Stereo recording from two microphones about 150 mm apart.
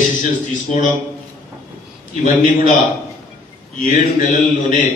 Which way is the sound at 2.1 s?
55° left (ahead or behind).